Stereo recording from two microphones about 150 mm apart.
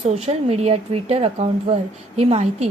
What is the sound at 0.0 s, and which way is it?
A woman's voice, 45° right (ahead or behind).